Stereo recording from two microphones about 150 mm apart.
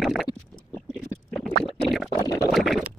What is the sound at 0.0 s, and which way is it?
Rowboat, centre (ahead or behind).